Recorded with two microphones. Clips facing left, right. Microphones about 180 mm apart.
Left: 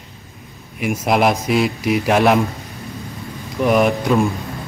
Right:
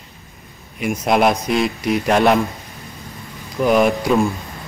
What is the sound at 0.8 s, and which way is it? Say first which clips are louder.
Speech: even; 5° left (ahead or behind).